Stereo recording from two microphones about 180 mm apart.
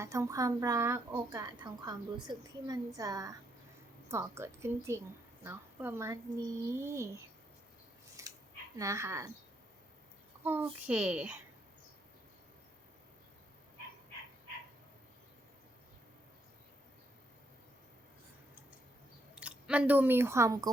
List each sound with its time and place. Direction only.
0.0 s a woman's voice: 15° right (ahead or behind)
8.2 s scissors: 15° right (ahead or behind)
8.7 s a woman's voice: 15° right (ahead or behind)
10.4 s a woman's voice: 10° right (ahead or behind)
19.4 s speech: 5° right (ahead or behind)